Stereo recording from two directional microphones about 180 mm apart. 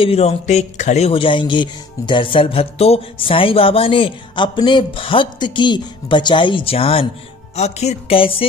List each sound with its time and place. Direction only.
0.0 s speech: 35° left (ahead or behind)
7.5 s music: 35° left (ahead or behind)